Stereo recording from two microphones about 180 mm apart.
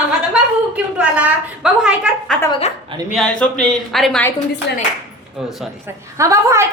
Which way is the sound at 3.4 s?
5° left (ahead or behind).